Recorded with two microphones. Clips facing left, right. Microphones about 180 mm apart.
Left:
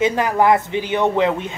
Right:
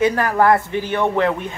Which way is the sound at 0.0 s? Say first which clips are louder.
Even; 20° left (ahead or behind).